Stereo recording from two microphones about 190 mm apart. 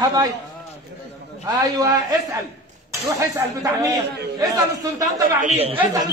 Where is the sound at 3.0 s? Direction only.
15° right (ahead or behind).